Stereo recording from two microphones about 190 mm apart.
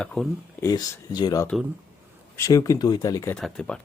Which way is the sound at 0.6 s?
20° left (ahead or behind).